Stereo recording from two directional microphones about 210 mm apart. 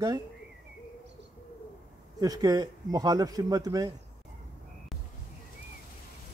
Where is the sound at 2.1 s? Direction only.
20° right (ahead or behind).